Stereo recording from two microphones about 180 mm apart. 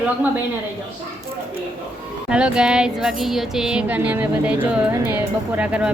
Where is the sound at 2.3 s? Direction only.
5° right (ahead or behind).